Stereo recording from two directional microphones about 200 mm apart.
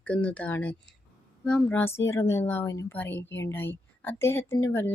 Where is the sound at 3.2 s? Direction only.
65° left (ahead or behind).